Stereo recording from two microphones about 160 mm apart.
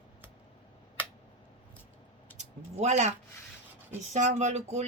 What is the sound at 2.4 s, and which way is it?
Speech, 45° right (ahead or behind).